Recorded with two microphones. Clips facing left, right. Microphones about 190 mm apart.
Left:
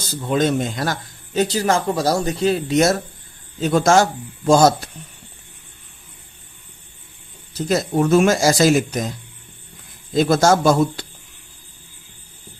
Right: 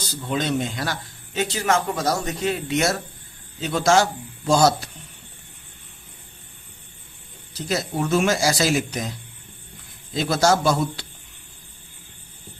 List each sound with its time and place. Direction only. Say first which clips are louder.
0.1 s speech: left 6 dB; 45° left (ahead or behind)
7.5 s speech: left 6 dB; 45° left (ahead or behind)
10.2 s speech: left 5 dB; 50° left (ahead or behind)